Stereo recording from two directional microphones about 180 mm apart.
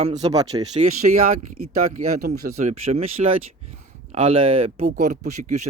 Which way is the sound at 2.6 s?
35° right (ahead or behind).